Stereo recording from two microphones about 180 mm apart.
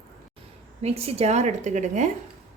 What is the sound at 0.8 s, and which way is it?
A woman's voice, 35° right (ahead or behind).